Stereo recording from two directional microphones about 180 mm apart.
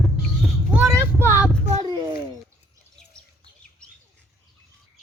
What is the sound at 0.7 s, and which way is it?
Child singing, 5° right (ahead or behind).